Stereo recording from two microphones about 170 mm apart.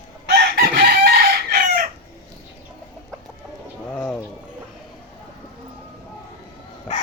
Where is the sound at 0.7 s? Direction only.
65° right (ahead or behind).